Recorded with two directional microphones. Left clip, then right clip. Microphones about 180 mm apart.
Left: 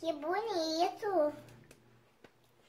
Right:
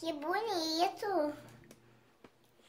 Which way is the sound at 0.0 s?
40° right (ahead or behind).